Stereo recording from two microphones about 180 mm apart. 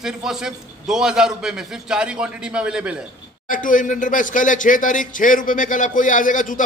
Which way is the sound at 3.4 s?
45° left (ahead or behind).